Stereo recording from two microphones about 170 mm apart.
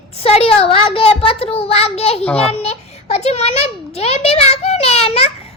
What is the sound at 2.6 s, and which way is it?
A child's voice, 40° left (ahead or behind).